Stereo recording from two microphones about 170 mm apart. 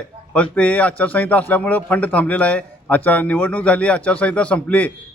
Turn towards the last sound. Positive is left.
turn(degrees=10)  # may be behind; listen again after turning